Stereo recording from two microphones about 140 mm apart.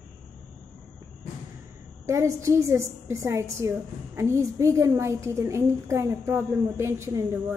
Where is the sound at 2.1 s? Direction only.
20° right (ahead or behind).